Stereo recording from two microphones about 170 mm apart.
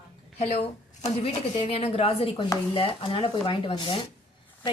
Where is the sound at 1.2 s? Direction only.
30° left (ahead or behind).